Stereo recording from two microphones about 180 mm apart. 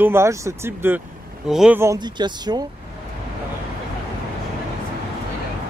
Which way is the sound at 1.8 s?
20° right (ahead or behind).